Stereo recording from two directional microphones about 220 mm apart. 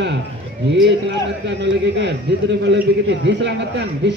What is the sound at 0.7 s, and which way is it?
A man's voice, 55° right (ahead or behind).